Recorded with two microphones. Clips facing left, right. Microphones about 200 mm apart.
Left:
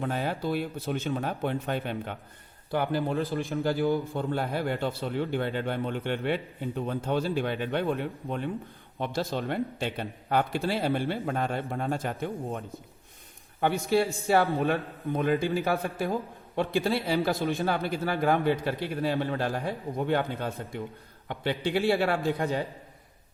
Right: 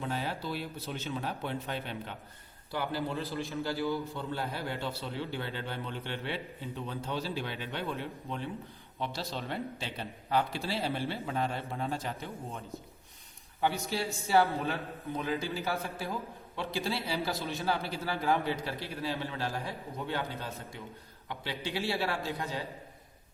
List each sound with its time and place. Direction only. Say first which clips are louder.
0.0 s a man's voice: left 6 dB; 55° left (ahead or behind)